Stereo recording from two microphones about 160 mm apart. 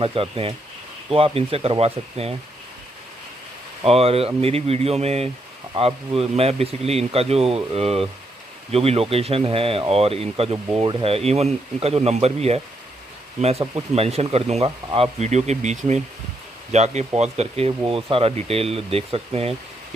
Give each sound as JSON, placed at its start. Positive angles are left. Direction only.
{"t": 0.0, "sound": "speech", "side_deg": -35}
{"t": 3.8, "sound": "speech", "side_deg": -40}